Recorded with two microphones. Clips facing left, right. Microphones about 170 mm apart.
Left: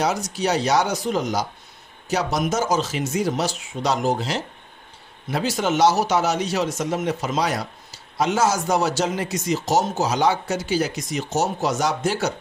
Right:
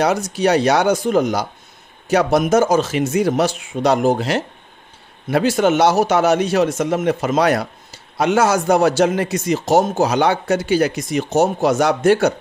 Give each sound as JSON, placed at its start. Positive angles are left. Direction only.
{"t": 0.0, "sound": "speech", "side_deg": -60}